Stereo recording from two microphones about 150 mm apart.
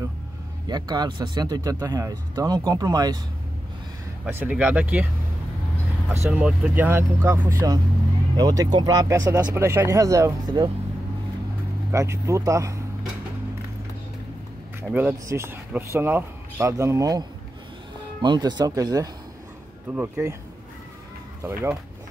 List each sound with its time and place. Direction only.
0.7 s speech: 25° right (ahead or behind)
4.3 s speech: 10° right (ahead or behind)
6.3 s speech: 10° right (ahead or behind); by 10.7 s 25° right (ahead or behind)
11.9 s speech: 20° right (ahead or behind)
14.8 s speech: 15° right (ahead or behind)
21.4 s speech: 20° right (ahead or behind)